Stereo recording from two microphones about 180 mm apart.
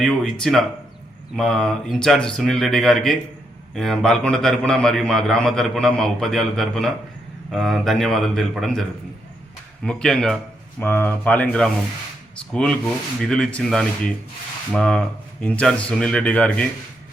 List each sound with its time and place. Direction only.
0.4 s a man's voice: centre (ahead or behind)
9.8 s a man's voice: 5° left (ahead or behind)